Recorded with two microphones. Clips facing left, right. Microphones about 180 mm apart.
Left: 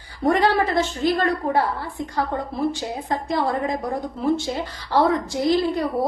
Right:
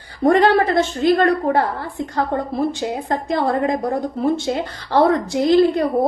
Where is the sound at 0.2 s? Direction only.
50° right (ahead or behind).